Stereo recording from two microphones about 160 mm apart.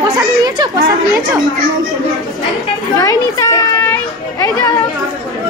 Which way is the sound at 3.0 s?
20° left (ahead or behind).